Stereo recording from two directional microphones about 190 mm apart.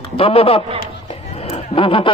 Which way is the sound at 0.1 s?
30° left (ahead or behind).